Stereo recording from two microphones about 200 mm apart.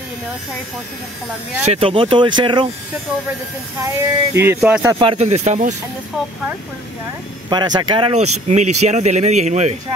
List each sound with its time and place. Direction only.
1.7 s speech: 25° right (ahead or behind)
3.8 s speech: 15° right (ahead or behind)
4.9 s speech: 30° right (ahead or behind)
7.4 s speech: 20° right (ahead or behind)